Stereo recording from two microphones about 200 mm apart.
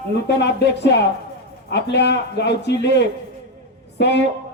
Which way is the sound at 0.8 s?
60° left (ahead or behind).